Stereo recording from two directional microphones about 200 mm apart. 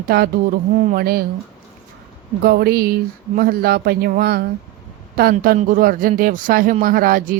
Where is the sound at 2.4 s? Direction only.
50° right (ahead or behind).